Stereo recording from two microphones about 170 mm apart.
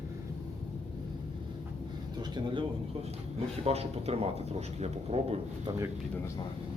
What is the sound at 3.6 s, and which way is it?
Speech, 35° right (ahead or behind).